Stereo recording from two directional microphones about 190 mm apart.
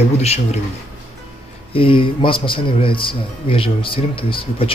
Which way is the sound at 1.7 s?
30° left (ahead or behind).